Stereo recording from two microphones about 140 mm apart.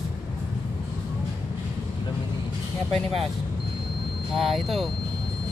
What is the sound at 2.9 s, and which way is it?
Speech, centre (ahead or behind).